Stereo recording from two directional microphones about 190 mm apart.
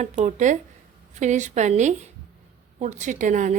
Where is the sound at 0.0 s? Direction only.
40° right (ahead or behind).